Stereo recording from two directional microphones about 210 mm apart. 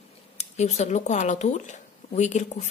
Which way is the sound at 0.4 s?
30° left (ahead or behind).